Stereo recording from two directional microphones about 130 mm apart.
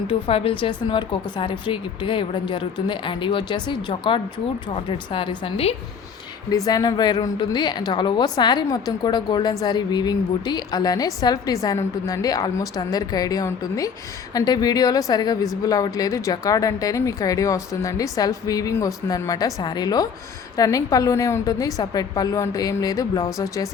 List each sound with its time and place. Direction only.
0.1 s a woman's voice: 45° left (ahead or behind)
6.7 s a woman's voice: 30° left (ahead or behind)